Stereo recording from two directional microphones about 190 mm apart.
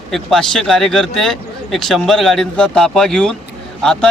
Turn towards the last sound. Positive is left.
turn(degrees=5)  # may be behind; listen again after turning